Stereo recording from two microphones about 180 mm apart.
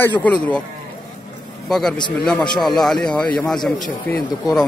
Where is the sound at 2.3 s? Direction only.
Centre (ahead or behind).